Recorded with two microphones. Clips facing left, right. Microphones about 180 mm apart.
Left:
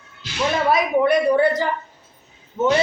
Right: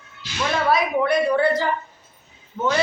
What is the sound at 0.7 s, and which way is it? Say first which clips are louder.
A man's voice: left 2 dB; 20° left (ahead or behind).